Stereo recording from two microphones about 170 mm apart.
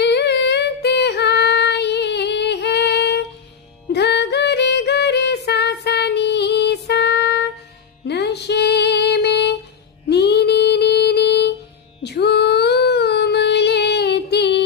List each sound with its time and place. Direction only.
0.0 s female singing: 80° left
8.1 s music: 80° left